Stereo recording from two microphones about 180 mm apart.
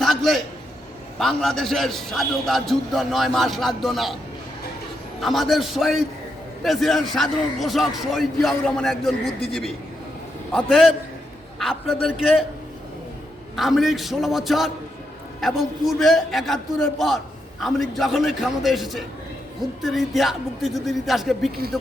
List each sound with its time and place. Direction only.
0.0 s a sound: centre (ahead or behind)
1.2 s a man's voice: centre (ahead or behind)
5.2 s a man's voice: centre (ahead or behind)
10.5 s a man's voice: centre (ahead or behind)
13.6 s a man's voice: centre (ahead or behind)